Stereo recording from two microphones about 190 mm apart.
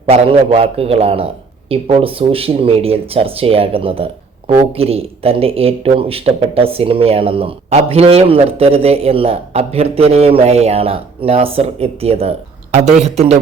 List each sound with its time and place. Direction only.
0.0 s speech: 30° right (ahead or behind)